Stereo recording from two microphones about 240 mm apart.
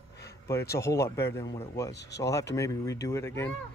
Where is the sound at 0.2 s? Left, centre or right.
Centre.